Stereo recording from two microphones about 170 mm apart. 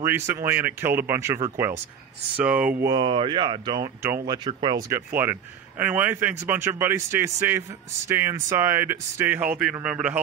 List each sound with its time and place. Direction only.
0.0 s a man's voice: 15° right (ahead or behind)
2.8 s a man's voice: 25° right (ahead or behind); by 10.1 s 5° right (ahead or behind)